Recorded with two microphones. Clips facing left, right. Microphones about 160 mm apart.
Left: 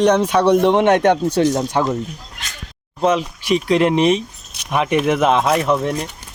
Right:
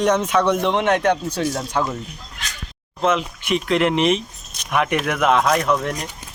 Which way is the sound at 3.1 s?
35° left (ahead or behind).